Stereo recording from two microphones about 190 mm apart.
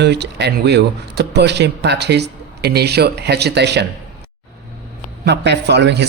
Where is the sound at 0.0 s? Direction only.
60° right (ahead or behind).